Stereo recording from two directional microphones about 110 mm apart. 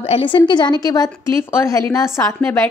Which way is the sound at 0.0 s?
60° left (ahead or behind).